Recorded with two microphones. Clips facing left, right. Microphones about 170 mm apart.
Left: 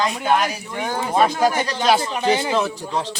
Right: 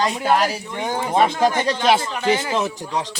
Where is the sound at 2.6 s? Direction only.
20° right (ahead or behind).